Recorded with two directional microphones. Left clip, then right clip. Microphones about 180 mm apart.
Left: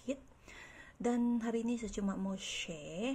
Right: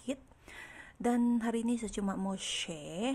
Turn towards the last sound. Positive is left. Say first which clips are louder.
# right 3 dB
turn(degrees=-20)  # may be behind; listen again after turning